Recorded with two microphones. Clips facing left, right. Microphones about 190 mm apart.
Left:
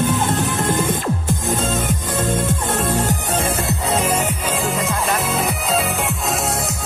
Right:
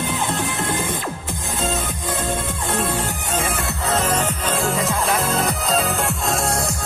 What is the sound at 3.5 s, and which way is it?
Music, 15° left (ahead or behind).